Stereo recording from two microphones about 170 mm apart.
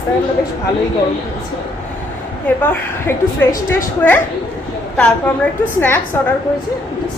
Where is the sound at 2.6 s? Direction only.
10° left (ahead or behind).